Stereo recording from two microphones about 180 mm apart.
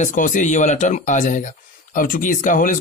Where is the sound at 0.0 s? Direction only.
45° left (ahead or behind).